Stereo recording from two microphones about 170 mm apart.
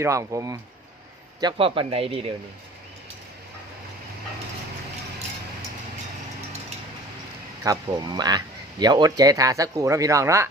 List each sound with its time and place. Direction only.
0.0 s speech: 20° right (ahead or behind); by 2.2 s 35° right (ahead or behind)
7.6 s speech: 20° right (ahead or behind)